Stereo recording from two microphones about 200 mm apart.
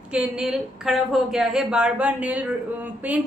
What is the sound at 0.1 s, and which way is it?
A woman's voice, 5° right (ahead or behind).